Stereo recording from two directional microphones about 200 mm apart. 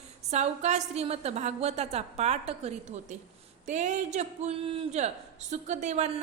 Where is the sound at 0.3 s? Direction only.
35° right (ahead or behind).